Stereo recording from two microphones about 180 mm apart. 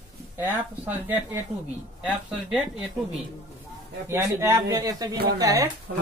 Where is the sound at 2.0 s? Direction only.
5° right (ahead or behind).